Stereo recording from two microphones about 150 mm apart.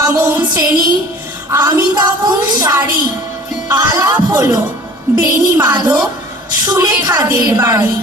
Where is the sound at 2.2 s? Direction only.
25° right (ahead or behind).